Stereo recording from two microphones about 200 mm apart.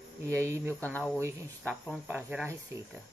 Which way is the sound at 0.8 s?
10° left (ahead or behind).